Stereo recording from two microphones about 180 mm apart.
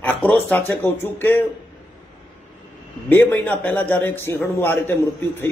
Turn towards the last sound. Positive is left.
turn(degrees=10)  # may be behind; listen again after turning